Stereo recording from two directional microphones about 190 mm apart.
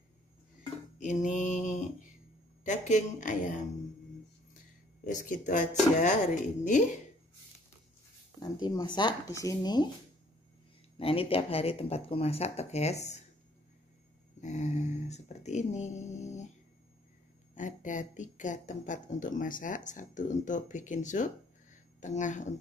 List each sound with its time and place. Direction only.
0.9 s a sound: 40° left (ahead or behind)
2.6 s speech: 40° left (ahead or behind)
5.0 s speech: 40° left (ahead or behind)
8.4 s speech: 20° left (ahead or behind)
11.0 s speech: 30° left (ahead or behind)
14.4 s speech: 40° left (ahead or behind)
17.6 s speech: 40° left (ahead or behind)